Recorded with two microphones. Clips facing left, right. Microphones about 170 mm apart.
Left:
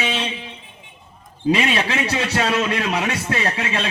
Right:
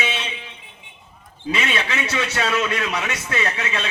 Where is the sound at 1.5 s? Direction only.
35° left (ahead or behind).